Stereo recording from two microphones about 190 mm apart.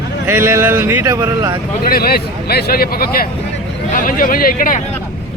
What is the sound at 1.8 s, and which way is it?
Speech, 55° left (ahead or behind).